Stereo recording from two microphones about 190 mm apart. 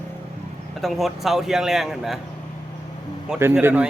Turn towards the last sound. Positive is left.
turn(degrees=-10)  # may be behind; listen again after turning